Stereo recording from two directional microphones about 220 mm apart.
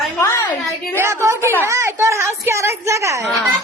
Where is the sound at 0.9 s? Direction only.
10° right (ahead or behind).